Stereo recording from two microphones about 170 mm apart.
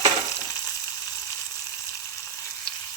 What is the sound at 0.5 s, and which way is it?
Frying, 20° left (ahead or behind).